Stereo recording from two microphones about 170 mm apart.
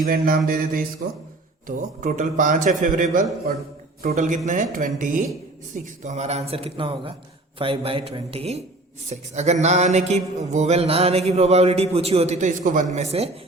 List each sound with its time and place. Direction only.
0.0 s mantra: 55° right (ahead or behind)
1.6 s a man's voice: 50° right (ahead or behind)
5.7 s a sound: 45° right (ahead or behind)